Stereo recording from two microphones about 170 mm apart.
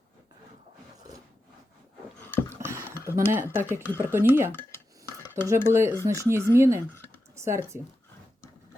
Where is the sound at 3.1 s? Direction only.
15° right (ahead or behind).